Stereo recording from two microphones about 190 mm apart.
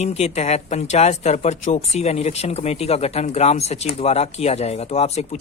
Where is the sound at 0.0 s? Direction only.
35° left (ahead or behind).